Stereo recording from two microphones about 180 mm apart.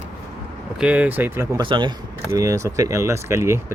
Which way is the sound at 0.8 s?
5° right (ahead or behind).